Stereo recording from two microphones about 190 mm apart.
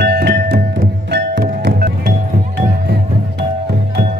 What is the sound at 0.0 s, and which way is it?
Music, 55° right (ahead or behind).